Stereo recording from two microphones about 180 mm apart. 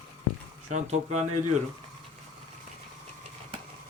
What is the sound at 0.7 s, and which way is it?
Speech, 40° right (ahead or behind).